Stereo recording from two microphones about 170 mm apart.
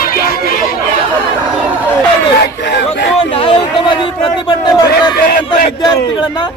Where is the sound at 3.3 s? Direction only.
30° left (ahead or behind).